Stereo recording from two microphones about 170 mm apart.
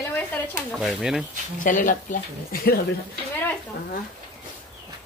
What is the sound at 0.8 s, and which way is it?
Speech, centre (ahead or behind).